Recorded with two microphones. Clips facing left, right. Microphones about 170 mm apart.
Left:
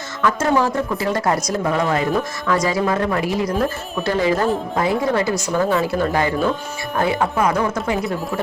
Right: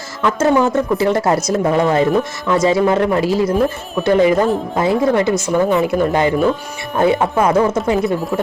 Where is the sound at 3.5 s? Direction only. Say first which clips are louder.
Right 5 dB; centre (ahead or behind).